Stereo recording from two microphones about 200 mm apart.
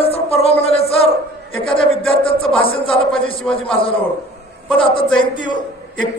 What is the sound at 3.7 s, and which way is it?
A woman's voice, 25° left (ahead or behind).